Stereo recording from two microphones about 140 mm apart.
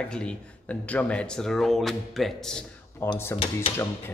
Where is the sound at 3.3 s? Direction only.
40° left (ahead or behind).